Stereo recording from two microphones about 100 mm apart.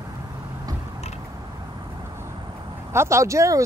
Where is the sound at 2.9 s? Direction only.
25° right (ahead or behind).